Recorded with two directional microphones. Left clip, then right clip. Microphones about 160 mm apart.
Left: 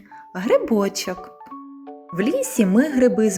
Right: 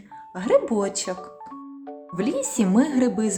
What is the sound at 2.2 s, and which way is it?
Speech, 20° left (ahead or behind).